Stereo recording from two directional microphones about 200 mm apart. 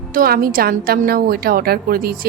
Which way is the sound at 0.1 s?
45° right (ahead or behind).